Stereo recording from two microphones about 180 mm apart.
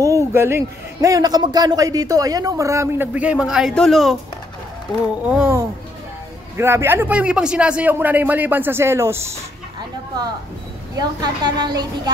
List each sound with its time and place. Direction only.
0.0 s a man's voice: 15° right (ahead or behind); by 4.2 s centre (ahead or behind)
5.3 s a man's voice: 10° right (ahead or behind)
11.0 s a woman's voice: 20° right (ahead or behind)